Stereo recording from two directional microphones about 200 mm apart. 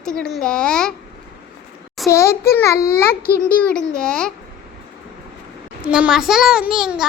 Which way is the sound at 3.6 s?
5° left (ahead or behind).